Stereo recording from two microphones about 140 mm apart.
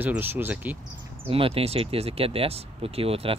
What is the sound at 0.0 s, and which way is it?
Speech, 15° right (ahead or behind).